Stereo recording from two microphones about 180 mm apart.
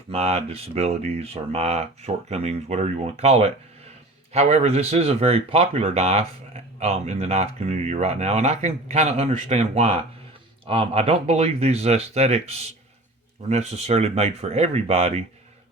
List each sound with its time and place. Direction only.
0.1 s speech: 35° right (ahead or behind)